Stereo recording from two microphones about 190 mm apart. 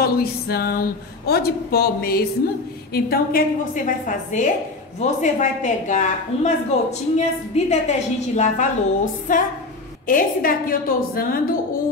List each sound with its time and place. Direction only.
0.0 s a woman's voice: 55° left (ahead or behind)